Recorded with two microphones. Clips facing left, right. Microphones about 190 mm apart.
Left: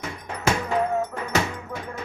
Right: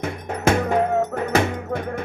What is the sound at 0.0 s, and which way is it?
Music, 55° right (ahead or behind).